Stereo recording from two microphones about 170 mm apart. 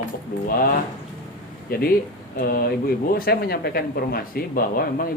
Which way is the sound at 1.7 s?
60° left (ahead or behind).